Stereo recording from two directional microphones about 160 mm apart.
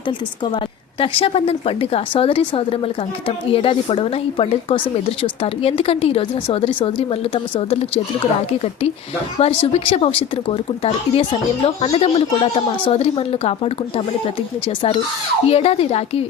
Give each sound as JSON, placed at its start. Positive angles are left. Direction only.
{"t": 0.5, "sound": "a woman's voice", "side_deg": 35}
{"t": 15.4, "sound": "a woman's voice", "side_deg": 40}